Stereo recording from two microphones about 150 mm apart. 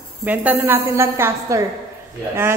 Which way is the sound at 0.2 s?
10° right (ahead or behind).